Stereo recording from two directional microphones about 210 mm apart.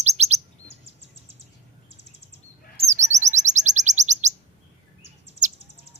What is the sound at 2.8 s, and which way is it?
Chirp, 35° right (ahead or behind).